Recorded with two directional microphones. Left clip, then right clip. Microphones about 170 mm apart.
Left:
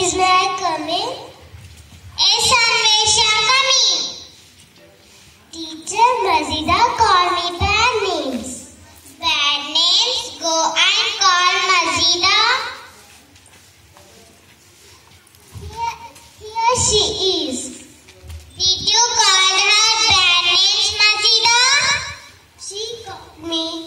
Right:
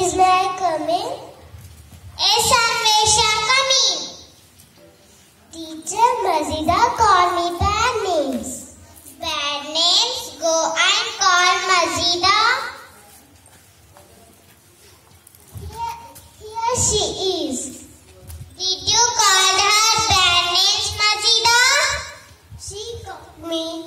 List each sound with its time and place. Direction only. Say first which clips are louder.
0.0 s child singing: left 1 dB; 35° right (ahead or behind)
2.1 s child singing: left 2 dB; 35° right (ahead or behind)
5.5 s child singing: left 3 dB; 30° right (ahead or behind)
6.3 s a sound: left 2 dB; 30° right (ahead or behind)
9.2 s child singing: left 6 dB; 30° right (ahead or behind)
16.6 s child singing: left 4 dB; 30° right (ahead or behind)
18.6 s child singing: left 3 dB; 30° right (ahead or behind)
23.4 s a sound: left 2 dB; 30° right (ahead or behind)